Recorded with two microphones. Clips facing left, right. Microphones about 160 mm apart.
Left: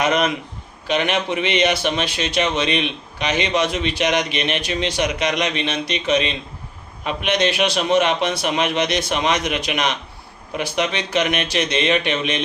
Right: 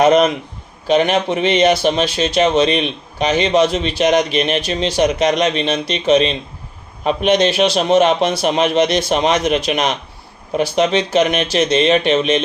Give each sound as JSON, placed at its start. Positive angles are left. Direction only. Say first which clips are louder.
{"t": 0.0, "sound": "speech", "louder": "right 7 dB", "side_deg": -35}